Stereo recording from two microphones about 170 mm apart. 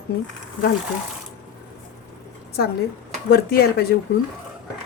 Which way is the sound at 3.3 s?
65° left (ahead or behind).